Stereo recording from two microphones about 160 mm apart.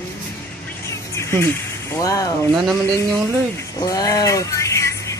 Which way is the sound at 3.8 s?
20° left (ahead or behind).